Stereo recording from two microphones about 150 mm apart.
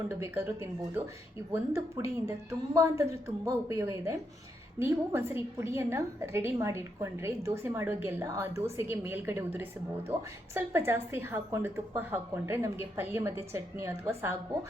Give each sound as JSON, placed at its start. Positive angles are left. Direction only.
{"t": 0.1, "sound": "a woman's voice", "side_deg": -15}
{"t": 2.2, "sound": "a woman's voice", "side_deg": -20}